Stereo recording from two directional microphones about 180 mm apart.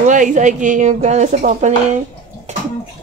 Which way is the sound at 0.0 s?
45° right (ahead or behind).